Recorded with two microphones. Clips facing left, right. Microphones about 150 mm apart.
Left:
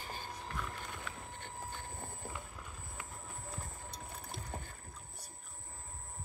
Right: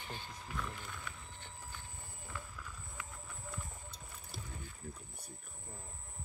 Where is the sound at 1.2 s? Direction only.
55° left (ahead or behind).